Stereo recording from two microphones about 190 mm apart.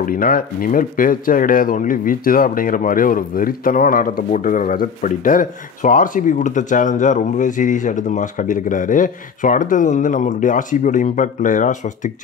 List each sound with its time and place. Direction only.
0.0 s speech: 50° left (ahead or behind)